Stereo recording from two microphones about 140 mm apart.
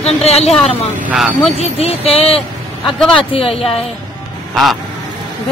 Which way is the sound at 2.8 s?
5° left (ahead or behind).